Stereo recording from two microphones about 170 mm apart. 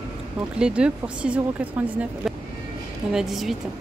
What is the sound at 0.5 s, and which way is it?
A woman's voice, 5° right (ahead or behind).